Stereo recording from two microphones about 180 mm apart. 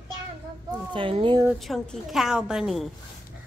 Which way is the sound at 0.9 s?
30° right (ahead or behind).